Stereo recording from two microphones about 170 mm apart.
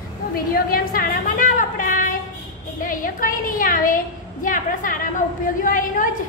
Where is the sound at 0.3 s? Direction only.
60° left (ahead or behind).